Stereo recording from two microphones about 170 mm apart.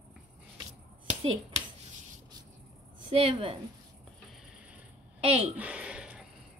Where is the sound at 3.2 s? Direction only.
30° right (ahead or behind).